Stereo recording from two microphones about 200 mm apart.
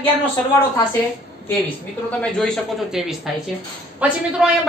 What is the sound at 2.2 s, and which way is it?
A woman's voice, 5° left (ahead or behind).